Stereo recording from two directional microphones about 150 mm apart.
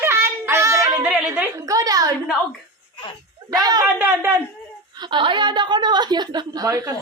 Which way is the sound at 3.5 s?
25° right (ahead or behind).